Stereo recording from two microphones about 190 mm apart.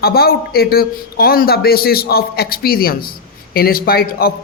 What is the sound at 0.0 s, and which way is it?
A man's voice, 55° left (ahead or behind).